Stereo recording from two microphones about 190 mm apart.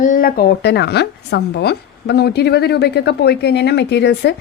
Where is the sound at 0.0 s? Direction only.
45° left (ahead or behind).